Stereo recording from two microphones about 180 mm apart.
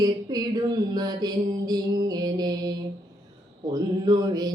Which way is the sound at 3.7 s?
20° right (ahead or behind).